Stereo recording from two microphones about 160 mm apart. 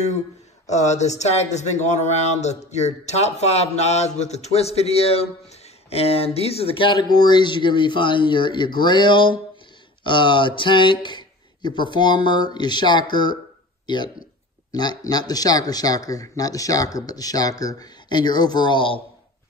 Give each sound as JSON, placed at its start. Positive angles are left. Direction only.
{"t": 0.7, "sound": "speech", "side_deg": 45}